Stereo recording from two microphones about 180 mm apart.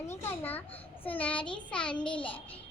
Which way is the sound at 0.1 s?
15° left (ahead or behind).